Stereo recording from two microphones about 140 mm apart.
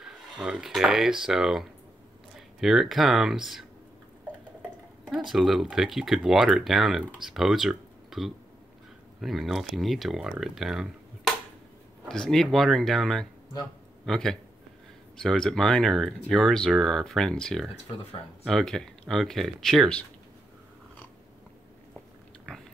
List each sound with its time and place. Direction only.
0.0 s speech: 5° right (ahead or behind)
5.3 s speech: centre (ahead or behind)
22.5 s biting: 5° left (ahead or behind)